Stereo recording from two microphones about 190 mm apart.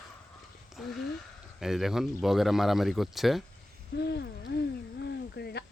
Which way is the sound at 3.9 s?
60° left (ahead or behind).